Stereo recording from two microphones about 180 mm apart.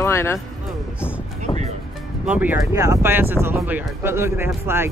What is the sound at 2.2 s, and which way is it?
Speech, 5° right (ahead or behind).